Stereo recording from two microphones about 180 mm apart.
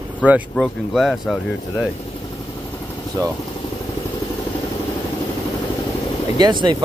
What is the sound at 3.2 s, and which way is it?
Speech, 20° right (ahead or behind).